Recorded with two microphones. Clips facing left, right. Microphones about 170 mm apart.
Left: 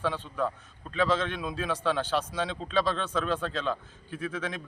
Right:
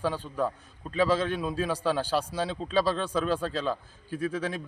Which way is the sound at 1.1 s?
35° right (ahead or behind).